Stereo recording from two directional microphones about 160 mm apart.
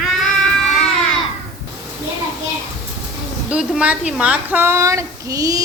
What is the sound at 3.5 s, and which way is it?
A woman's voice, 5° right (ahead or behind).